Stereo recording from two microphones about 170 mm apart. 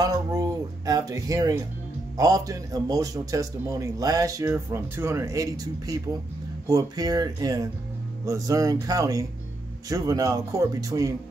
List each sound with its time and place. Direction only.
0.0 s a man's voice: 20° right (ahead or behind)